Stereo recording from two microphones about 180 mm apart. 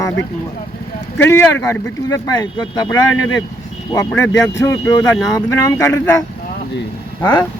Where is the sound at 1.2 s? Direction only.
10° left (ahead or behind).